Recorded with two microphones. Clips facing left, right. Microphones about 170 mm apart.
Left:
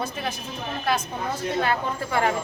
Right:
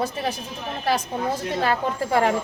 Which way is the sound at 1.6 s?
35° right (ahead or behind).